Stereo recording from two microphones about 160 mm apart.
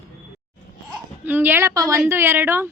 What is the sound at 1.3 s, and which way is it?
A woman's voice, 10° right (ahead or behind).